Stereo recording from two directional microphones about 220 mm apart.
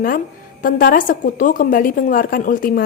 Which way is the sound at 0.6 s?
40° left (ahead or behind).